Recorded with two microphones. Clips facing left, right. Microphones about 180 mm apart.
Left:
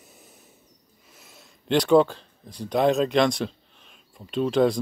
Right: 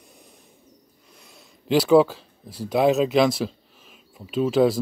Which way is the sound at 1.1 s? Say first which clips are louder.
Right 1 dB; centre (ahead or behind).